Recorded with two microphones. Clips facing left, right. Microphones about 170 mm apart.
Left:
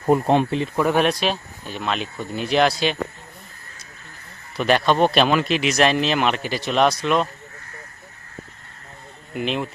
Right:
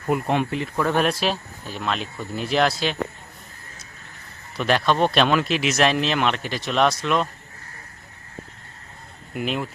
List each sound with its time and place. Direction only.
0.0 s speech: 35° left (ahead or behind); by 0.9 s 20° left (ahead or behind)
0.9 s speech: centre (ahead or behind)
4.5 s speech: centre (ahead or behind)
9.3 s speech: centre (ahead or behind)